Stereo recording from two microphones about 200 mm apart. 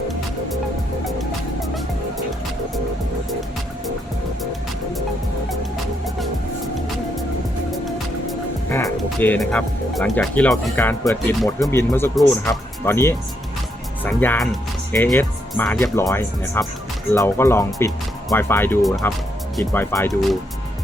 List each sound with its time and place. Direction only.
7.7 s music: centre (ahead or behind)
8.7 s speech: 10° left (ahead or behind)
18.8 s speech: centre (ahead or behind)
19.7 s speech: 10° left (ahead or behind)